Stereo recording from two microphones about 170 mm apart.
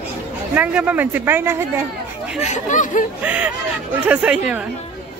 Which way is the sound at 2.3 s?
45° left (ahead or behind).